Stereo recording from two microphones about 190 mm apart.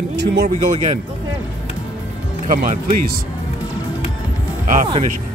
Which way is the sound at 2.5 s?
50° right (ahead or behind).